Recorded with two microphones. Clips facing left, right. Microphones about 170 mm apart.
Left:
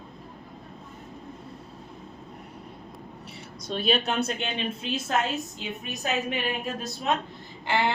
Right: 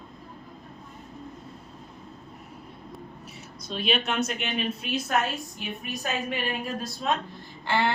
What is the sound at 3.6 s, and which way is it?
A woman's voice, 40° left (ahead or behind).